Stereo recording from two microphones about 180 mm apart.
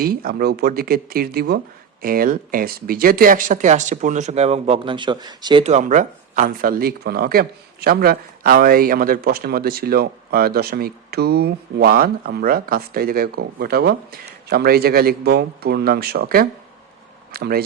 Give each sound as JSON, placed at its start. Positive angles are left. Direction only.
{"t": 0.0, "sound": "speech", "side_deg": -55}
{"t": 5.6, "sound": "speech", "side_deg": -40}